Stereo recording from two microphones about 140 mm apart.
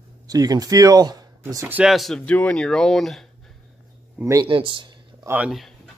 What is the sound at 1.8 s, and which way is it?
Speech, centre (ahead or behind).